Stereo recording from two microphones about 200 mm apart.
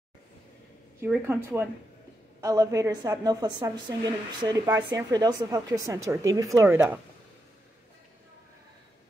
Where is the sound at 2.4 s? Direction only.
15° right (ahead or behind).